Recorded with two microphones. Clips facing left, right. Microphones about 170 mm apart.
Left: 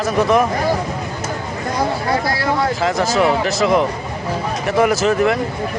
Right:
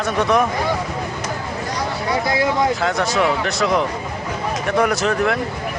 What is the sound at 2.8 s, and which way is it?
Speech, centre (ahead or behind).